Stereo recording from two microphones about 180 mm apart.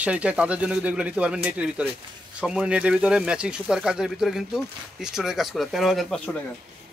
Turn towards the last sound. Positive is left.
turn(degrees=0)  # may be behind; listen again after turning